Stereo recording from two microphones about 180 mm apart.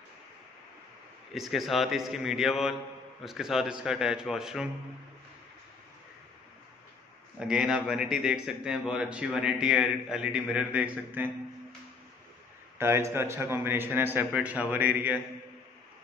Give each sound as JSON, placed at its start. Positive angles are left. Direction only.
{"t": 1.3, "sound": "a man's voice", "side_deg": 0}
{"t": 7.3, "sound": "a man's voice", "side_deg": -5}
{"t": 12.7, "sound": "a man's voice", "side_deg": -15}